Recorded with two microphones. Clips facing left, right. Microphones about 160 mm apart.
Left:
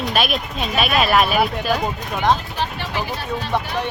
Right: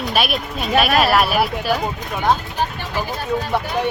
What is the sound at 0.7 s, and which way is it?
Speech, 50° right (ahead or behind).